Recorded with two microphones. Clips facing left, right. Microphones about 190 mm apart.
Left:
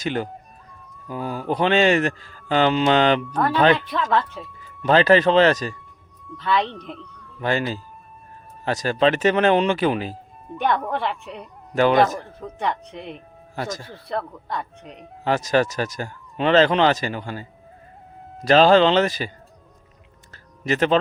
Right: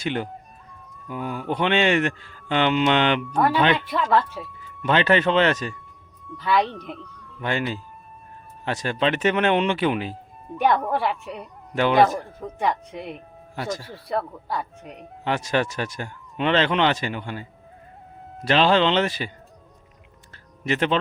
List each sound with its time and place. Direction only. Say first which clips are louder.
0.0 s a man's voice: left 1 dB; 40° left (ahead or behind)
3.3 s speech: right 1 dB; 10° right (ahead or behind)
4.8 s a man's voice: left 4 dB; 35° left (ahead or behind)
6.2 s speech: right 1 dB; 10° right (ahead or behind)
7.4 s a man's voice: left 3 dB; 35° left (ahead or behind)
10.5 s speech: right 2 dB; 5° right (ahead or behind)
11.7 s speech: left 4 dB; 40° left (ahead or behind)
12.4 s speech: right 1 dB; 10° right (ahead or behind)
13.6 s speech: even; 45° left (ahead or behind)
13.9 s speech: right 1 dB; 10° right (ahead or behind)
15.2 s a man's voice: left 4 dB; 40° left (ahead or behind)
18.4 s a man's voice: left 5 dB; 40° left (ahead or behind)
20.3 s music: left 2 dB; 40° left (ahead or behind)